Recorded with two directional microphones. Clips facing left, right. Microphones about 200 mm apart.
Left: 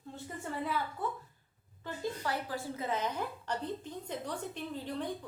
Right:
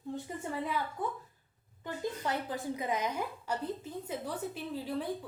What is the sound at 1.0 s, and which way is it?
A woman's voice, 15° right (ahead or behind).